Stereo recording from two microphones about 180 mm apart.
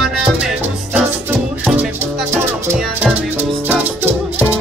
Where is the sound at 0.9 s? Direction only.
5° right (ahead or behind).